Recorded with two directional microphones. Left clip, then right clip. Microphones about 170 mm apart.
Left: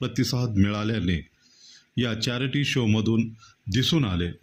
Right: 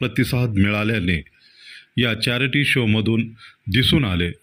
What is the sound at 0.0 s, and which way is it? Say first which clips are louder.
Speech: right 6 dB; 10° right (ahead or behind).